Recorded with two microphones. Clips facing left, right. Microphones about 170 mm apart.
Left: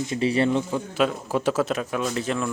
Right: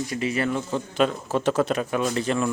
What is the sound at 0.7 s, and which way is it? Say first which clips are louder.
A man's voice: even; 5° left (ahead or behind).